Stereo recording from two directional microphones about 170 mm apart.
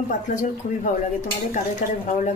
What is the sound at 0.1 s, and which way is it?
Speech, 45° left (ahead or behind).